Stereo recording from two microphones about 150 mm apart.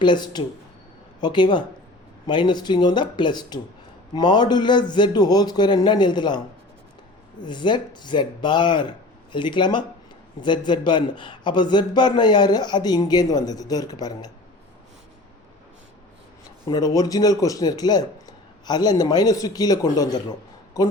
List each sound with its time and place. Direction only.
0.0 s a man's voice: 30° left (ahead or behind)
7.4 s a man's voice: 30° left (ahead or behind)
16.6 s a man's voice: 25° left (ahead or behind)